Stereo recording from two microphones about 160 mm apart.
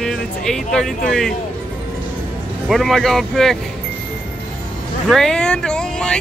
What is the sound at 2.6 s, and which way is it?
Speech, centre (ahead or behind).